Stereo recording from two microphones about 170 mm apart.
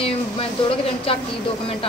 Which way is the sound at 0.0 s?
35° left (ahead or behind).